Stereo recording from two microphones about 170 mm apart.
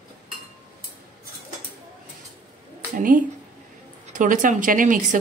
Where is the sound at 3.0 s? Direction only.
50° right (ahead or behind).